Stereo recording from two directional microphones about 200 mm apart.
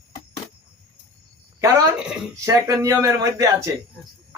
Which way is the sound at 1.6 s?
15° right (ahead or behind).